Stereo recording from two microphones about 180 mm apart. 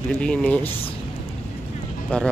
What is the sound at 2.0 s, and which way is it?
Speech, 5° left (ahead or behind).